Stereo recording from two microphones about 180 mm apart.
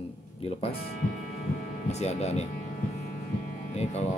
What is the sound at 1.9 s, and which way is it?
Speech, 40° left (ahead or behind).